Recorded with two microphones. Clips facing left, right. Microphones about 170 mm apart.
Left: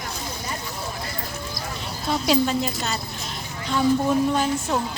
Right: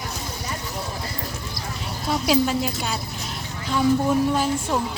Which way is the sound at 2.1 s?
5° right (ahead or behind).